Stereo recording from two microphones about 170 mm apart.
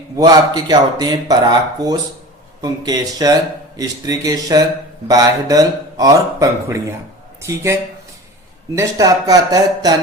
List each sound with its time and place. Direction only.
0.2 s speech: 25° right (ahead or behind)